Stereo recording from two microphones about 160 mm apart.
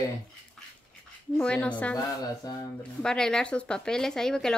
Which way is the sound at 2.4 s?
25° left (ahead or behind).